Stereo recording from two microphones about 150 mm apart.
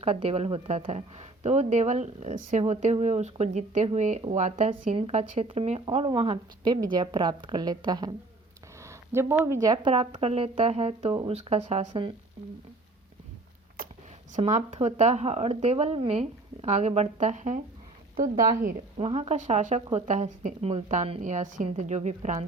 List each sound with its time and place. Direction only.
0.0 s speech: 40° right (ahead or behind)
4.7 s a woman's voice: 40° right (ahead or behind)
8.8 s a sound: 20° right (ahead or behind)
9.4 s a woman's voice: 20° right (ahead or behind)
9.7 s speech: 35° right (ahead or behind)
13.8 s a sound: 75° right (ahead or behind)
14.3 s a woman's voice: 50° right (ahead or behind)
18.9 s speech: 40° right (ahead or behind)